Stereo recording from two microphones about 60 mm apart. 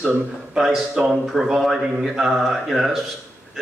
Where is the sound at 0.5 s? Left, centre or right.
Centre.